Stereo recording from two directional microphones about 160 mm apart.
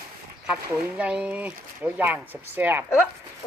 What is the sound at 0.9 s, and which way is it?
Speech, 5° right (ahead or behind).